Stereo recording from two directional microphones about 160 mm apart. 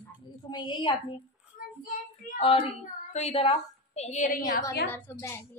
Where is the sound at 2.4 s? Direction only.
35° left (ahead or behind); by 4.6 s 55° left (ahead or behind).